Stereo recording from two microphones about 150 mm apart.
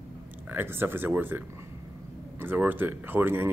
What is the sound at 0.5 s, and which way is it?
Speech, 15° right (ahead or behind).